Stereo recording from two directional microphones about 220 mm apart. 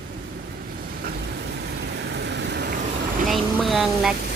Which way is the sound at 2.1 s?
50° right (ahead or behind).